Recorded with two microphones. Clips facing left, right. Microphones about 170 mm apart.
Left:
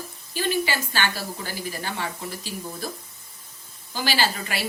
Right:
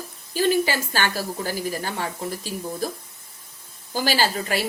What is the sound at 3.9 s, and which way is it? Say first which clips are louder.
Speech: right 3 dB; 45° right (ahead or behind).